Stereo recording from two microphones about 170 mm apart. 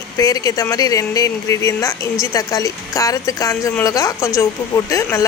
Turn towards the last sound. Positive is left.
turn(degrees=20)  # may be behind; listen again after turning